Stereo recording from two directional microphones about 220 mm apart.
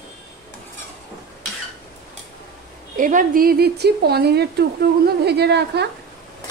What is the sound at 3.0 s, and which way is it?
Speech, 35° right (ahead or behind).